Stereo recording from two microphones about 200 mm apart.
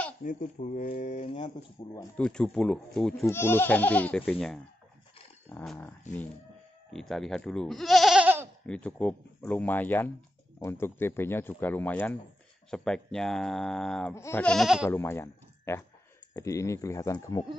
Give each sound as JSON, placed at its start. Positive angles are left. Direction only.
{"t": 0.2, "sound": "speech", "side_deg": 40}
{"t": 2.1, "sound": "speech", "side_deg": 5}
{"t": 8.6, "sound": "speech", "side_deg": 5}
{"t": 14.9, "sound": "speech", "side_deg": 10}